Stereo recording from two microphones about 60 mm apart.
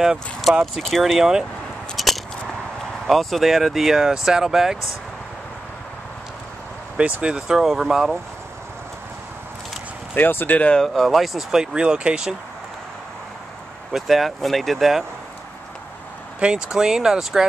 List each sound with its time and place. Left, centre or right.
0.5 s speech: centre
2.0 s a sound: centre
3.1 s speech: centre
7.0 s speech: right
7.3 s speech: centre
10.1 s speech: left
10.8 s speech: centre
13.9 s speech: centre
16.3 s speech: centre